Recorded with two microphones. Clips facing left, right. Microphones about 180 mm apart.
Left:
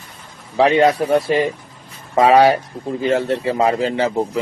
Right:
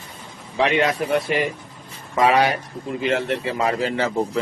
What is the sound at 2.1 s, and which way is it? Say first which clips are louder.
A man's voice: left 6 dB; 30° left (ahead or behind).